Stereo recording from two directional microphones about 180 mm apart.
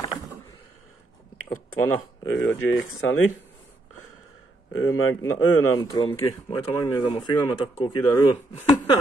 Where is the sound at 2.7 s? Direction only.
90° left.